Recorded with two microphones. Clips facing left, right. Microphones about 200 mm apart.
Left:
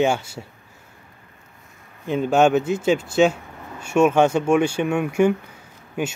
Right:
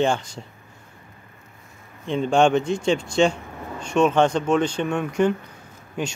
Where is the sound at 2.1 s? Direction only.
5° left (ahead or behind).